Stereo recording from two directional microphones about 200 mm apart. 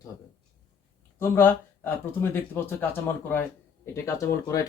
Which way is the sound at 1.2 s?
10° left (ahead or behind).